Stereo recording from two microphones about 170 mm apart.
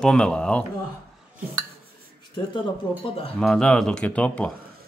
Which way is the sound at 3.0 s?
35° left (ahead or behind).